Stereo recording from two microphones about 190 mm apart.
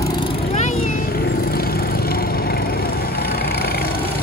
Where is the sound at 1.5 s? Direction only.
50° left (ahead or behind).